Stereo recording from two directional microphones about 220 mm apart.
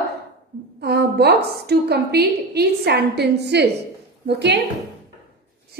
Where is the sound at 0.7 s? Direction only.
45° right (ahead or behind).